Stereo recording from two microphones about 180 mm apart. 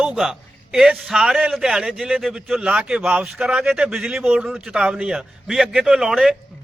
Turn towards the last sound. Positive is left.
turn(degrees=0)  # may be behind; listen again after turning